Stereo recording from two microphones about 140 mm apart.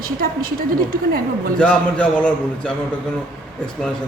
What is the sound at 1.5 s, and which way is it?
A man's voice, 10° left (ahead or behind).